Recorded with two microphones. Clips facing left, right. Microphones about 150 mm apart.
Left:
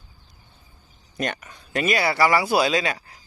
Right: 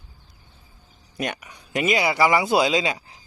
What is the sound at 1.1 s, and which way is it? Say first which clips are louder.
Speech: left 1 dB; 10° right (ahead or behind).